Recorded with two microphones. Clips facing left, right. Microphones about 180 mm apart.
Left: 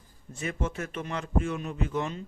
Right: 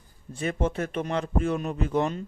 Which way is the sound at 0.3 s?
30° right (ahead or behind).